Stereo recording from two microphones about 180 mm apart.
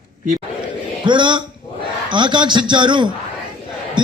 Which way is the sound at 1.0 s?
25° right (ahead or behind).